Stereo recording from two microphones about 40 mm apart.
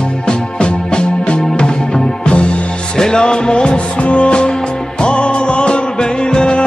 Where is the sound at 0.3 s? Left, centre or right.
Left.